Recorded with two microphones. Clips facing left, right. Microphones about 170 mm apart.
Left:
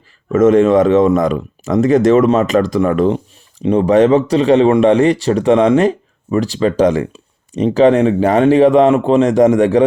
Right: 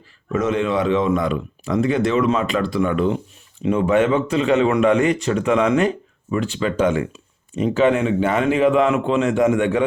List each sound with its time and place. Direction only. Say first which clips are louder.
0.3 s speech: left 10 dB; 45° left (ahead or behind)